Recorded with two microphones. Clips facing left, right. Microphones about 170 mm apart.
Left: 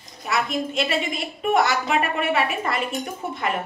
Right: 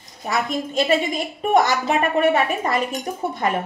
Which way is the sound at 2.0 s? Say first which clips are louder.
Right 5 dB; 40° right (ahead or behind).